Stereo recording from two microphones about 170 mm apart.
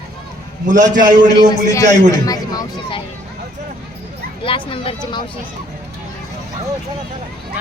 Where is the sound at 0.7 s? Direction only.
50° right (ahead or behind).